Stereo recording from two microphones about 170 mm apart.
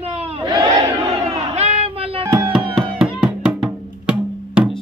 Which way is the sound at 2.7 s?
Centre (ahead or behind).